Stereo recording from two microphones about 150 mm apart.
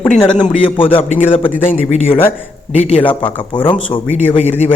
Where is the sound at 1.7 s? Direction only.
50° left (ahead or behind).